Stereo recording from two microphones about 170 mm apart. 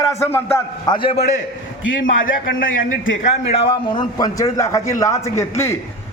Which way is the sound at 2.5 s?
55° left (ahead or behind).